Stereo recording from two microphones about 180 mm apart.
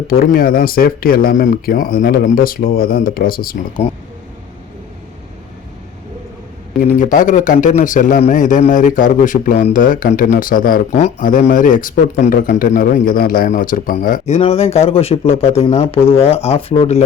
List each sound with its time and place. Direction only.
0.1 s speech: 55° left (ahead or behind)
6.8 s a man's voice: 45° left (ahead or behind)